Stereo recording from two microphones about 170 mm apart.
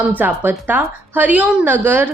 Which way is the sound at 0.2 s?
10° right (ahead or behind).